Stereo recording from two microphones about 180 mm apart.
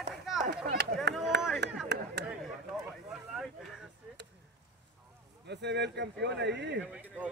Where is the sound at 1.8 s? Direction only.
70° right (ahead or behind).